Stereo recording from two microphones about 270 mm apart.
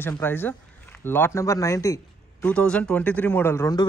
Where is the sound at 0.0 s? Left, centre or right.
Centre.